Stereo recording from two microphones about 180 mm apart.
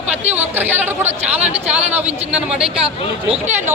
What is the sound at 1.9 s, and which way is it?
Speech, 5° right (ahead or behind).